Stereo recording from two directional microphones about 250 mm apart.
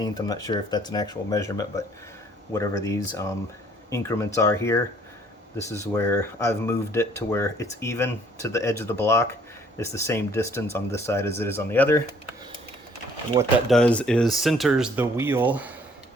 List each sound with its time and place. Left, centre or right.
0.0 s speech: centre
13.3 s speech: centre
13.7 s speech: centre